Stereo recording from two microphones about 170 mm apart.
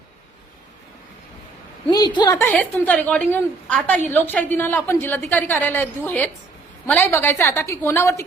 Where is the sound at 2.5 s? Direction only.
10° left (ahead or behind).